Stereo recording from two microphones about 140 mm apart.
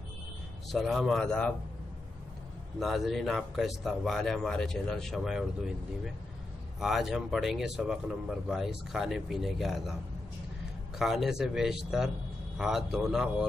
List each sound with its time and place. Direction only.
0.7 s speech: centre (ahead or behind)
2.8 s speech: centre (ahead or behind)
6.8 s speech: centre (ahead or behind)
11.0 s speech: centre (ahead or behind)